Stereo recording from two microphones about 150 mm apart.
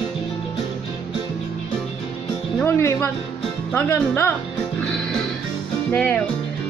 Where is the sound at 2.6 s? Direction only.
15° left (ahead or behind).